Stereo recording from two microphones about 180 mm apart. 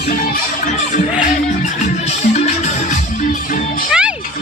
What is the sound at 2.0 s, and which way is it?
Music, 40° left (ahead or behind).